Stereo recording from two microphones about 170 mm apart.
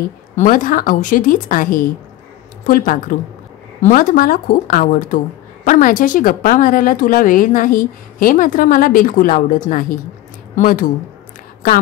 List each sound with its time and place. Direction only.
0.4 s a woman's voice: 50° left (ahead or behind)